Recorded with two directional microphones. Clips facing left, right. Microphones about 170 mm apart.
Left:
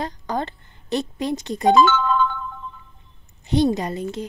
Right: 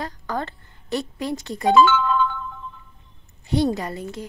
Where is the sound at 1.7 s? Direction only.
40° left (ahead or behind).